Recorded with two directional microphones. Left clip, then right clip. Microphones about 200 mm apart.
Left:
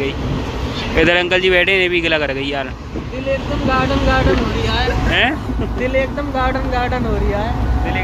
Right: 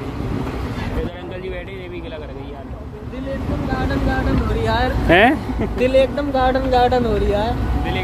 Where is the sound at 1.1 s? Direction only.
25° left (ahead or behind).